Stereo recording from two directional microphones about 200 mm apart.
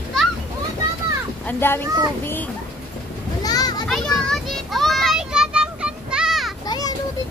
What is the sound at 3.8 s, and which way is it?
Children playing, centre (ahead or behind).